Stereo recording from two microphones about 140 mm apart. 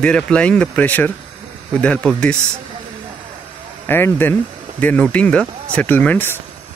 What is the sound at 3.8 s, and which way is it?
Speech, 15° left (ahead or behind).